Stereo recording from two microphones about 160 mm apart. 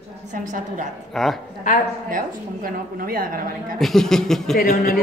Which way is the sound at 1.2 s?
Centre (ahead or behind).